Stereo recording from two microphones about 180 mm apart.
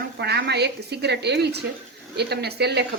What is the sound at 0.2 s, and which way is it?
A woman's voice, 70° right (ahead or behind).